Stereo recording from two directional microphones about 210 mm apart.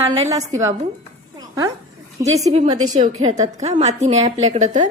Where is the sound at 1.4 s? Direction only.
15° right (ahead or behind).